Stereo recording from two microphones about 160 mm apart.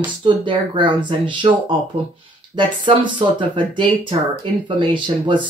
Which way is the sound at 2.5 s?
30° right (ahead or behind).